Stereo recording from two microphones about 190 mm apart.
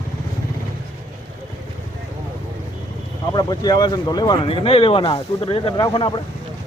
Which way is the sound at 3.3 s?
20° left (ahead or behind).